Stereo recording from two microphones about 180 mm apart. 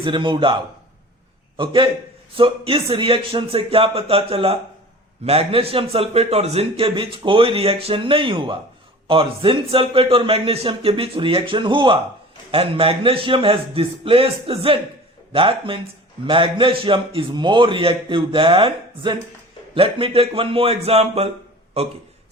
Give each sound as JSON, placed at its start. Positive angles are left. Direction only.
{"t": 0.0, "sound": "a man's voice", "side_deg": -25}